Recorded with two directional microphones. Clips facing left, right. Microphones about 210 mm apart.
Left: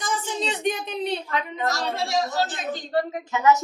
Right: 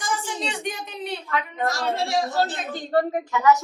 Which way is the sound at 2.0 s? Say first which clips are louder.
Right 1 dB; 30° right (ahead or behind).